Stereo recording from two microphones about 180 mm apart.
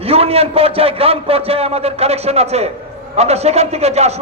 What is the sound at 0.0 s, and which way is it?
A man's voice, 35° right (ahead or behind).